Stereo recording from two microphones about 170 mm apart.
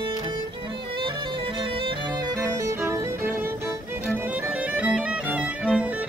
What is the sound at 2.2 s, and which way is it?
Music, 15° right (ahead or behind).